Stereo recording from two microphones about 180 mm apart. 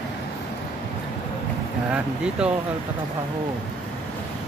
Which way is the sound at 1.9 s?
5° right (ahead or behind).